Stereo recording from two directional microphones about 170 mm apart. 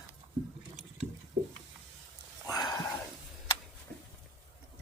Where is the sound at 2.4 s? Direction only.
20° left (ahead or behind).